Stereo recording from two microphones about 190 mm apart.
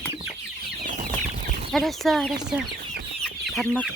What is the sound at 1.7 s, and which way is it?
Speech, centre (ahead or behind).